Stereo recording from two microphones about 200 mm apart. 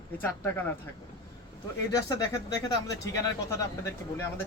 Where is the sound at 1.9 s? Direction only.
15° left (ahead or behind).